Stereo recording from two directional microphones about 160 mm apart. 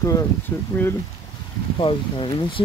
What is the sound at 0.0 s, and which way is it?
Speech, 20° left (ahead or behind).